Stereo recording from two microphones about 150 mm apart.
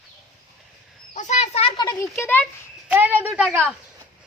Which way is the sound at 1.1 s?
55° left (ahead or behind).